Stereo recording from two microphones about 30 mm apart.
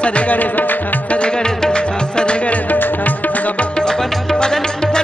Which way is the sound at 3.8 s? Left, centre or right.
Left.